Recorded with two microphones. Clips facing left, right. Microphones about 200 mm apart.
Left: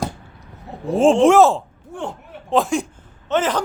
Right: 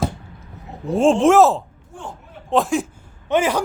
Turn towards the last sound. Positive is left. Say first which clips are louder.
# right 1 dB
turn(degrees=-10)  # may be behind; listen again after turning